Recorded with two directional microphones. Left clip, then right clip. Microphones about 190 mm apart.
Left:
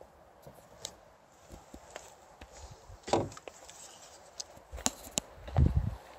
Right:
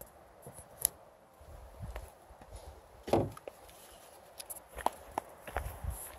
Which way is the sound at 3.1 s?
45° right (ahead or behind).